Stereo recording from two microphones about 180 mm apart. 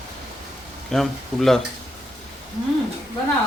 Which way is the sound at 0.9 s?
Centre (ahead or behind).